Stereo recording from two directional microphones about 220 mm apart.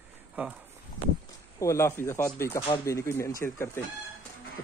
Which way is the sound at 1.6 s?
15° left (ahead or behind).